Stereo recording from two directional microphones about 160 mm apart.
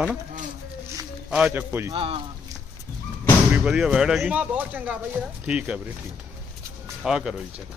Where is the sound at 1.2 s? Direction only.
5° right (ahead or behind).